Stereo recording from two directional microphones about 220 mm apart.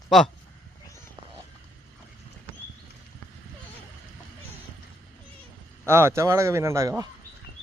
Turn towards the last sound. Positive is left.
turn(degrees=-15)  # may be behind; listen again after turning